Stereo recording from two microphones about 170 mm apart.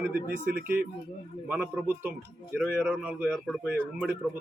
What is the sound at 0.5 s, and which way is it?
Speech, 65° right (ahead or behind).